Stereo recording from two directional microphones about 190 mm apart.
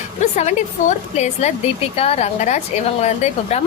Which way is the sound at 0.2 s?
40° left (ahead or behind).